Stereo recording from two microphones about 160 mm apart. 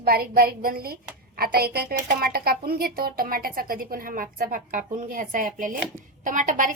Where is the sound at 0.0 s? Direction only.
70° right (ahead or behind).